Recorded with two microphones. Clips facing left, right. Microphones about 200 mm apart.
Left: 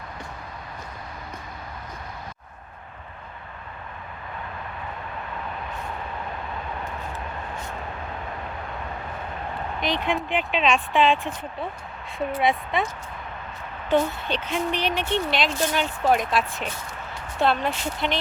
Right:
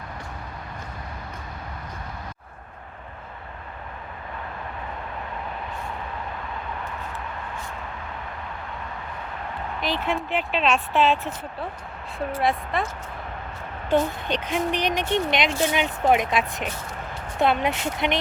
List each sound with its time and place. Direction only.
9.8 s speech: 5° right (ahead or behind)
12.4 s speech: centre (ahead or behind)
13.9 s speech: 15° right (ahead or behind)
17.7 s speech: 20° right (ahead or behind)